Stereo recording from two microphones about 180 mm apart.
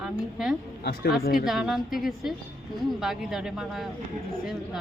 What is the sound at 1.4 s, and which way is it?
Speech, centre (ahead or behind).